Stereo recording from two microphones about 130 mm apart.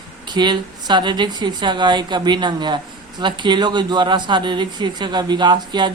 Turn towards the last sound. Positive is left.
turn(degrees=-35)  # may be behind; listen again after turning